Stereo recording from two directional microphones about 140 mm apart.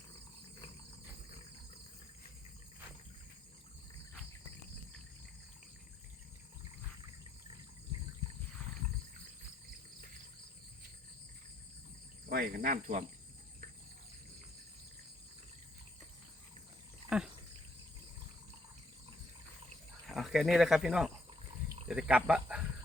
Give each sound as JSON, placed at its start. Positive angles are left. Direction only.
{"t": 12.3, "sound": "cricket", "side_deg": -90}
{"t": 17.1, "sound": "speech", "side_deg": -5}
{"t": 20.1, "sound": "speech", "side_deg": 0}